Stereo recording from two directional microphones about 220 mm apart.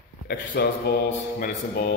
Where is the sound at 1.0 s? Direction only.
40° left (ahead or behind).